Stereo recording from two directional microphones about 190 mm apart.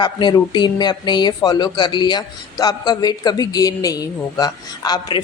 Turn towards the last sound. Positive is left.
turn(degrees=20)  # may be behind; listen again after turning